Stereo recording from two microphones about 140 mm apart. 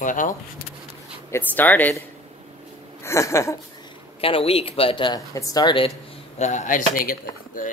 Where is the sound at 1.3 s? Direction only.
15° left (ahead or behind).